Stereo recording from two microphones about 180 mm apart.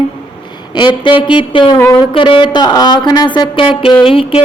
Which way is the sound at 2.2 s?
30° left (ahead or behind).